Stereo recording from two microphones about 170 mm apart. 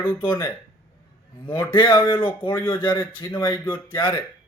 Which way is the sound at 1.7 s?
30° left (ahead or behind).